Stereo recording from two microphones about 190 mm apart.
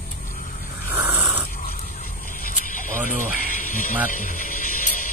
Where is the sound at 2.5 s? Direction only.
45° left (ahead or behind).